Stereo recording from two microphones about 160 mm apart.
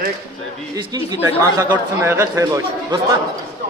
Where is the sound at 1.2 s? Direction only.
15° right (ahead or behind).